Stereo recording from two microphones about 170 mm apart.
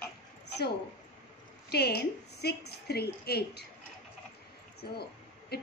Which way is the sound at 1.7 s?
70° left (ahead or behind).